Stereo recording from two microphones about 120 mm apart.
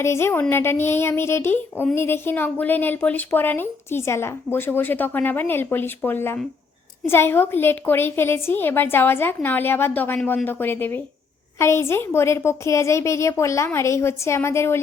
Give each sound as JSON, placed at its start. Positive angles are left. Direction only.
{"t": 0.0, "sound": "a woman's voice", "side_deg": 20}